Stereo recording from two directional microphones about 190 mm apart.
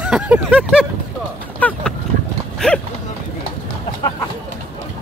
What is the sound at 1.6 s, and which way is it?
Dog, 10° left (ahead or behind).